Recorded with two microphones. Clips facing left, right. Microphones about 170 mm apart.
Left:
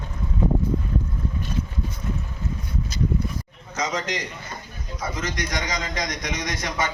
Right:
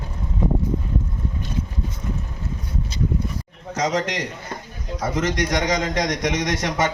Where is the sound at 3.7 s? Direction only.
75° right (ahead or behind).